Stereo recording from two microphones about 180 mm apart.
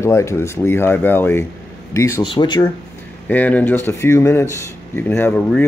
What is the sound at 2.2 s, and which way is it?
Speech, 25° left (ahead or behind).